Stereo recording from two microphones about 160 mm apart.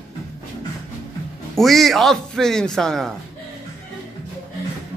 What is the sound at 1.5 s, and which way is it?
A man's voice, centre (ahead or behind).